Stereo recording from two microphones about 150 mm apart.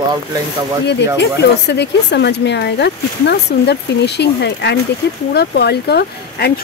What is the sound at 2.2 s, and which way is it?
Speech, 90° left.